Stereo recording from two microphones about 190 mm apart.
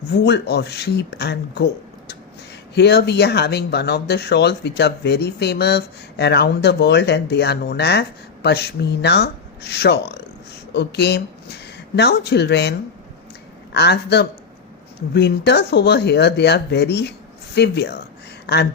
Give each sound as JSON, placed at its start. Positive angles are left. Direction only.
{"t": 0.1, "sound": "speech", "side_deg": 60}
{"t": 13.7, "sound": "speech", "side_deg": 60}
{"t": 18.4, "sound": "a sound", "side_deg": 60}